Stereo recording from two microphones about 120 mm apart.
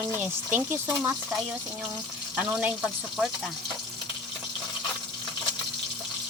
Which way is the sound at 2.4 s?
10° right (ahead or behind).